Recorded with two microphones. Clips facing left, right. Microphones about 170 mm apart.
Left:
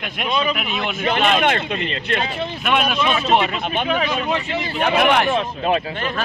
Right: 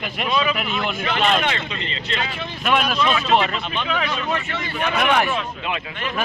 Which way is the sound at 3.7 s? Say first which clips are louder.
Left 4 dB; 50° left (ahead or behind).